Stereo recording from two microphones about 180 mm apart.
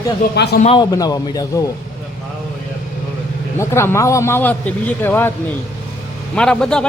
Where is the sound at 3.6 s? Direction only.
15° left (ahead or behind).